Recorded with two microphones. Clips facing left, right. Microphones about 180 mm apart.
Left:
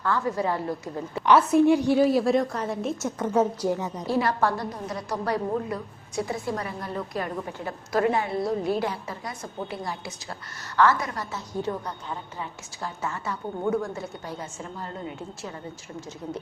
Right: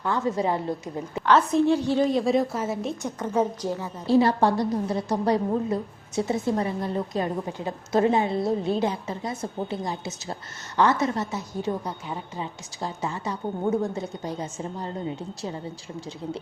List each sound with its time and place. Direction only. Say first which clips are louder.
0.0 s a woman's voice: right 1 dB; 20° right (ahead or behind)
1.2 s a woman's voice: left 2 dB; 10° left (ahead or behind)
3.6 s a woman's voice: left 3 dB; 15° left (ahead or behind)
4.0 s a woman's voice: right 6 dB; 30° right (ahead or behind)